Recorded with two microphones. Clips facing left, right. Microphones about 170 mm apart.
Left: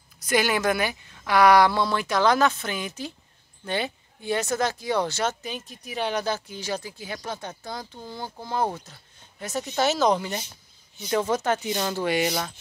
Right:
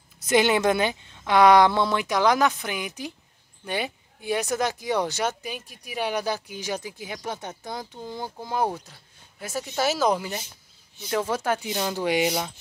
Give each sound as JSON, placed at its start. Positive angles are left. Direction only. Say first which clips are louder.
{"t": 0.2, "sound": "speech", "louder": "right 3 dB", "side_deg": -25}